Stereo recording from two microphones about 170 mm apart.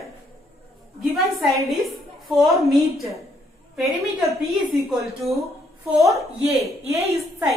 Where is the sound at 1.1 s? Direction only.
Centre (ahead or behind).